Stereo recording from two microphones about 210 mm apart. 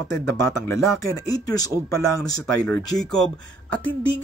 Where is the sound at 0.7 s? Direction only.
15° left (ahead or behind).